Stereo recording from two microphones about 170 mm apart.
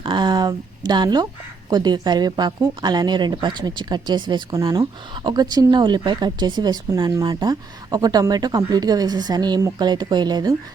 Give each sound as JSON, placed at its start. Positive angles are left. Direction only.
{"t": 0.0, "sound": "speech", "side_deg": -25}